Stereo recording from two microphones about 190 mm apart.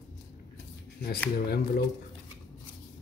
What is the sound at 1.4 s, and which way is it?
Speech, 55° left (ahead or behind).